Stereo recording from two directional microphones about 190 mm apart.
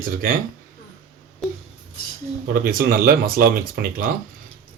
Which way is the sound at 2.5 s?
50° right (ahead or behind).